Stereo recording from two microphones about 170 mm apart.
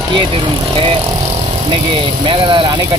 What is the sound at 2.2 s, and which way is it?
Speech, 30° right (ahead or behind).